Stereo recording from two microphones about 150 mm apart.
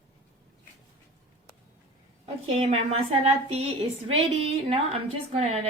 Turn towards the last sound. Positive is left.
turn(degrees=-45)  # may be behind; listen again after turning